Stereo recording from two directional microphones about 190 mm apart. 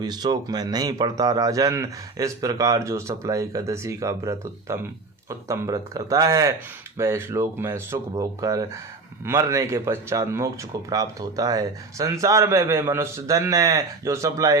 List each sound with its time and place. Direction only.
0.0 s speech: 20° right (ahead or behind)